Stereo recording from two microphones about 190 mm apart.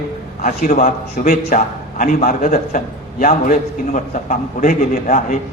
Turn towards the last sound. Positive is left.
turn(degrees=45)  # may be behind; listen again after turning